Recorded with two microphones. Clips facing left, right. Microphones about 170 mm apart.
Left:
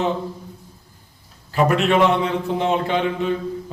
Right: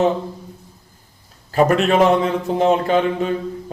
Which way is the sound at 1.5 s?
40° right (ahead or behind).